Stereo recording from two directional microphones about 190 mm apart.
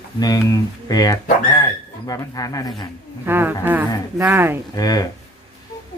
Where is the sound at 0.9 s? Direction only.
20° left (ahead or behind).